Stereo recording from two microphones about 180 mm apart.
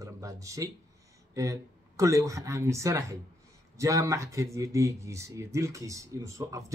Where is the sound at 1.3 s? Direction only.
15° right (ahead or behind).